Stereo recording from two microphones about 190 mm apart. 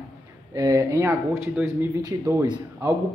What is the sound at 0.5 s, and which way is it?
A man's voice, 15° right (ahead or behind).